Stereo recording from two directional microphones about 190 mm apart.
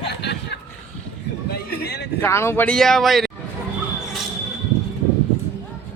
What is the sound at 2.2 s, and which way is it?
Speech, 15° left (ahead or behind).